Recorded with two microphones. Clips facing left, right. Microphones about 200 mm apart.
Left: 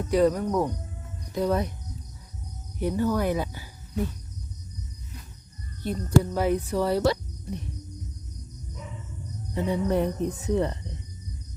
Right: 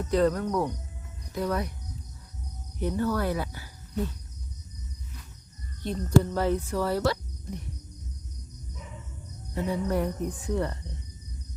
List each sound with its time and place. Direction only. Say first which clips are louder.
0.1 s speech: left 2 dB; 10° left (ahead or behind)
1.3 s speech: left 4 dB; 25° left (ahead or behind)
2.7 s speech: left 2 dB; 15° left (ahead or behind)
5.8 s speech: even; 10° left (ahead or behind)
9.6 s speech: left 3 dB; 20° left (ahead or behind)